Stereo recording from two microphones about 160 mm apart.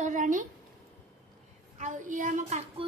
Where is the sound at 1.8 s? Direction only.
50° right (ahead or behind).